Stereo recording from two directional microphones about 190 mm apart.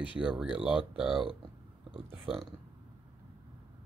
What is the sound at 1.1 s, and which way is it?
Speech, 30° right (ahead or behind).